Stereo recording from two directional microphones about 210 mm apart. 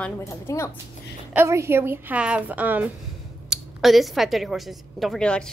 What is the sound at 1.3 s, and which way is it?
A woman's voice, 10° right (ahead or behind).